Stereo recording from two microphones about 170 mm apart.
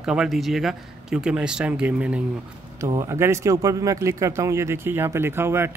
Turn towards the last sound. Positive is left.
turn(degrees=-15)  # may be behind; listen again after turning